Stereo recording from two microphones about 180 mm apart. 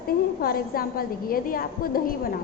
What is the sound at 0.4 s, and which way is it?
A woman's voice, 55° left (ahead or behind).